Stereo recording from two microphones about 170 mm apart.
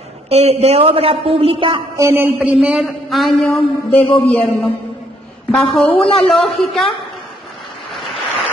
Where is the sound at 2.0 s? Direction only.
15° right (ahead or behind); by 4.5 s 10° left (ahead or behind).